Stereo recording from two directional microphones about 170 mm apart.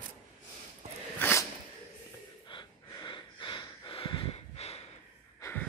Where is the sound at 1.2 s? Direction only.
15° left (ahead or behind).